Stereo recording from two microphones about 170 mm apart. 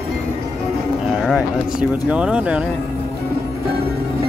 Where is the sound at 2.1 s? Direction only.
5° right (ahead or behind).